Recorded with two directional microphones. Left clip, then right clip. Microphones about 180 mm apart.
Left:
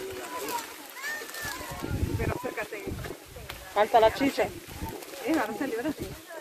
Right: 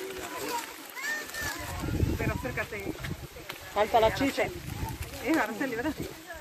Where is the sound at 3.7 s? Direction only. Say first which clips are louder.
Left 3 dB; 10° left (ahead or behind).